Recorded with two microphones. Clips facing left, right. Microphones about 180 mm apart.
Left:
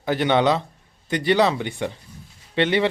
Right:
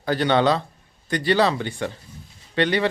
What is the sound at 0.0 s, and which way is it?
A man's voice, 20° left (ahead or behind).